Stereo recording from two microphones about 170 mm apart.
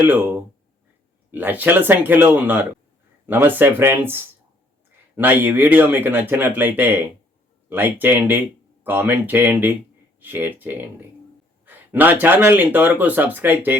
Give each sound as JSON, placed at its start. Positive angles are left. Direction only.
{"t": 0.0, "sound": "speech", "side_deg": -10}
{"t": 11.6, "sound": "a sound", "side_deg": -10}
{"t": 12.5, "sound": "speech", "side_deg": -10}